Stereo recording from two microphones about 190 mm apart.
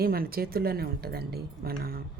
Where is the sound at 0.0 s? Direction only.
50° right (ahead or behind).